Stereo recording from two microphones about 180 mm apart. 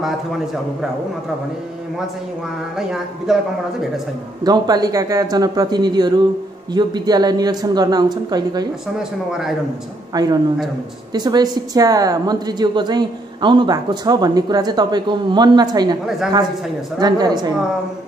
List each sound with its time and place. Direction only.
2.7 s speech: centre (ahead or behind)
4.4 s a woman's voice: 20° right (ahead or behind)
8.9 s speech: 5° right (ahead or behind)
10.1 s a woman's voice: 20° right (ahead or behind)
17.0 s a woman's voice: 25° right (ahead or behind)